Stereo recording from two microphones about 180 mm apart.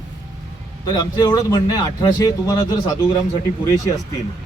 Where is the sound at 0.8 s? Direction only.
20° left (ahead or behind).